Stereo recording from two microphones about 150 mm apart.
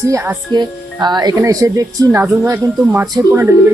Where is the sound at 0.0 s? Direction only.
20° right (ahead or behind).